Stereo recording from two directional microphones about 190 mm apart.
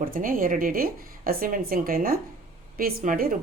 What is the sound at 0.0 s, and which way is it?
A woman's voice, 50° right (ahead or behind).